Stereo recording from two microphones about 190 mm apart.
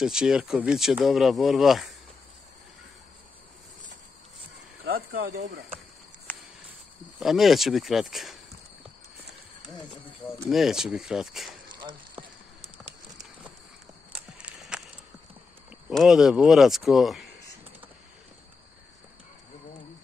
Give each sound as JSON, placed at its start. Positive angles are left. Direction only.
{"t": 0.0, "sound": "speech", "side_deg": -5}
{"t": 4.8, "sound": "speech", "side_deg": -50}
{"t": 7.2, "sound": "speech", "side_deg": 0}
{"t": 10.5, "sound": "speech", "side_deg": 0}
{"t": 12.7, "sound": "a sound", "side_deg": -5}
{"t": 15.9, "sound": "speech", "side_deg": 0}